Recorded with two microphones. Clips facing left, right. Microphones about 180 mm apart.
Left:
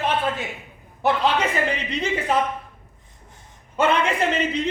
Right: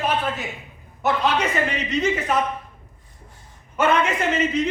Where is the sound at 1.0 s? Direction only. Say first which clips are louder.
Left 1 dB; 30° left (ahead or behind).